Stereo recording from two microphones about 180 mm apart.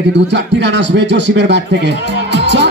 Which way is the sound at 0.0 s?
75° right (ahead or behind).